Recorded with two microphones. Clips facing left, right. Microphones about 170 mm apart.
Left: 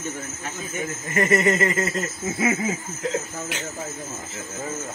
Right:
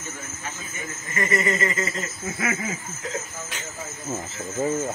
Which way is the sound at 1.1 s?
60° left (ahead or behind).